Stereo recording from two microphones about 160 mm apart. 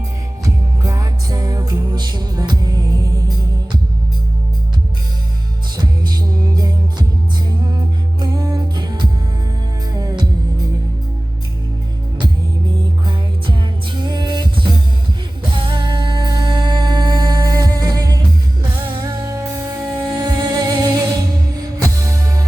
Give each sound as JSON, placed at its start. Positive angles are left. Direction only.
{"t": 0.4, "sound": "music", "side_deg": -20}
{"t": 5.7, "sound": "music", "side_deg": -25}
{"t": 13.1, "sound": "music", "side_deg": -30}